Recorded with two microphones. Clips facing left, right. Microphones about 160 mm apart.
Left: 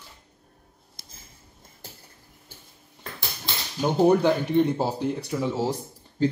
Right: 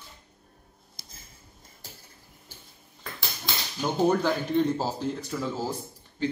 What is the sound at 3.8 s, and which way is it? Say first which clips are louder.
Speech: left 5 dB; 15° left (ahead or behind).